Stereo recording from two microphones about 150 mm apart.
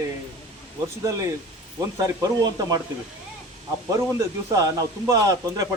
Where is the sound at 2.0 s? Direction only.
25° right (ahead or behind).